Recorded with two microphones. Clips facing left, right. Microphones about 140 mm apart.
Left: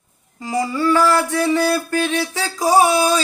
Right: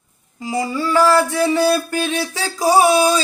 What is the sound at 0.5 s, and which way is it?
Music, 25° right (ahead or behind).